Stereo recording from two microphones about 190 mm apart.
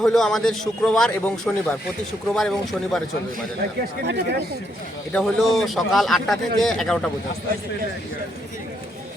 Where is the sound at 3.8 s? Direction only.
60° right (ahead or behind).